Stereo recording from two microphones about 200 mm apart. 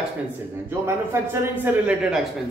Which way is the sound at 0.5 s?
10° right (ahead or behind).